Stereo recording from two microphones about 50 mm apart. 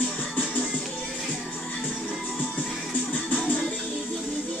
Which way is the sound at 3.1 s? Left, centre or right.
Left.